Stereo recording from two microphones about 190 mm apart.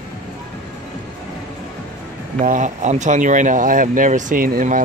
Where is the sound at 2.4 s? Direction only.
40° right (ahead or behind).